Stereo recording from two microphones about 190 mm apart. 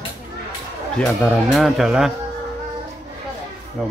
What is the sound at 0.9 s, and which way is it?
Speech, 5° left (ahead or behind).